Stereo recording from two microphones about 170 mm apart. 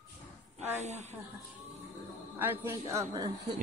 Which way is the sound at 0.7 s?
40° right (ahead or behind).